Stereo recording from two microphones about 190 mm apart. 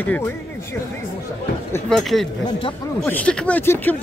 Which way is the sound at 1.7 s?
5° left (ahead or behind).